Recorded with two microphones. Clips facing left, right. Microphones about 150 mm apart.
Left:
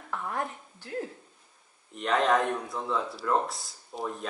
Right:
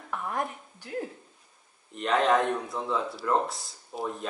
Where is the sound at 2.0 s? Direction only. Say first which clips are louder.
Right 1 dB; centre (ahead or behind).